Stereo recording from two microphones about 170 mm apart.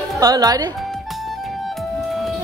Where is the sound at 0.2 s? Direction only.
20° right (ahead or behind).